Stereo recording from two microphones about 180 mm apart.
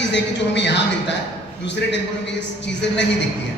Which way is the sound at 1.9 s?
75° left (ahead or behind).